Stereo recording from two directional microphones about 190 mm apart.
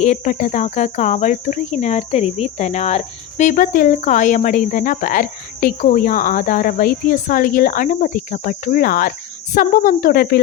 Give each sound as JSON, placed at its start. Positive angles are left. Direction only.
{"t": 0.0, "sound": "cricket", "side_deg": 40}